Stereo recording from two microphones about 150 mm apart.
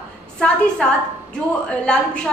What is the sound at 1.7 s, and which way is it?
Speech, 5° left (ahead or behind).